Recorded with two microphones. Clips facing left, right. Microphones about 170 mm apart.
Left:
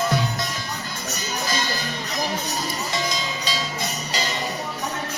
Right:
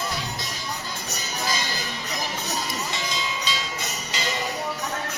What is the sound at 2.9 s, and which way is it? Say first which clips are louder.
Jingle bell: left 3 dB; 40° left (ahead or behind).